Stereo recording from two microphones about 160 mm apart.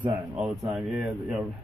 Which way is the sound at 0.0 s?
10° right (ahead or behind).